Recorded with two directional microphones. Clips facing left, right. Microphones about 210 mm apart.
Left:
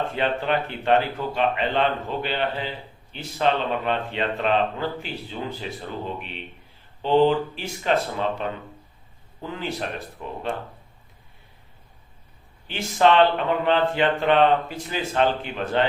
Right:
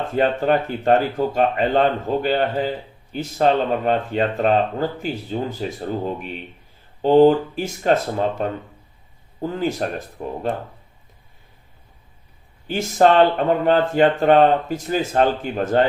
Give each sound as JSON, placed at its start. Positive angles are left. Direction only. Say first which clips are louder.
{"t": 0.1, "sound": "speech", "louder": "right 6 dB", "side_deg": -45}
{"t": 12.6, "sound": "speech", "louder": "right 4 dB", "side_deg": -45}